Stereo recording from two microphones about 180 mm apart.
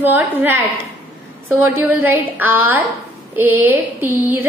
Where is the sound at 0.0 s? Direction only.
10° right (ahead or behind).